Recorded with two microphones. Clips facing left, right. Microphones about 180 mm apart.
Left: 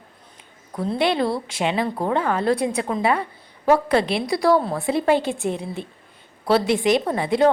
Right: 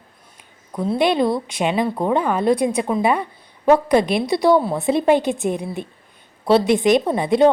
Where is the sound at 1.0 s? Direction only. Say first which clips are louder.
Right 3 dB; 15° right (ahead or behind).